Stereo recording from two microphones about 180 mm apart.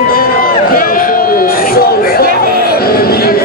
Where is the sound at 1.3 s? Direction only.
55° left (ahead or behind).